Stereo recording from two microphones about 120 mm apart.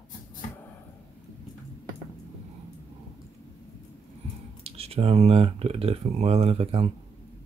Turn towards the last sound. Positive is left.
turn(degrees=-55)  # may be behind; listen again after turning